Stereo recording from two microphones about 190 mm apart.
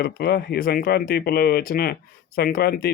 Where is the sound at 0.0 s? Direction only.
55° left (ahead or behind).